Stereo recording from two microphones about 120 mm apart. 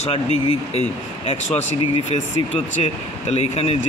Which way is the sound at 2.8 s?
60° left (ahead or behind).